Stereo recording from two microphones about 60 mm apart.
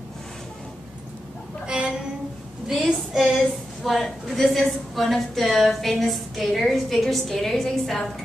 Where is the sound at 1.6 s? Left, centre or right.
Centre.